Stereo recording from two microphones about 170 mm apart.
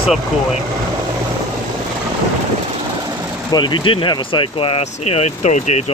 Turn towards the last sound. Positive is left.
turn(degrees=40)  # may be behind; listen again after turning